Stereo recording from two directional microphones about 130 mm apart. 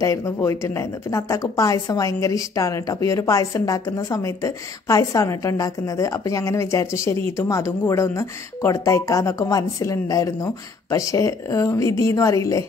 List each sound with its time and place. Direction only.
0.0 s speech: 25° left (ahead or behind)